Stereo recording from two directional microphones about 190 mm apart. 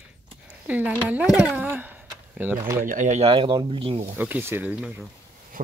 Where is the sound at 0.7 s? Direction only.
10° right (ahead or behind).